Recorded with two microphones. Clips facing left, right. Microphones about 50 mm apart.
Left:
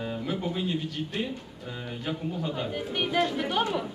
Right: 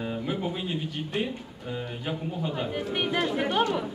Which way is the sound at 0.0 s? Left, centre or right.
Centre.